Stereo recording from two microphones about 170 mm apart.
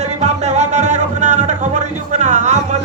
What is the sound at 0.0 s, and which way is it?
Music, 40° right (ahead or behind).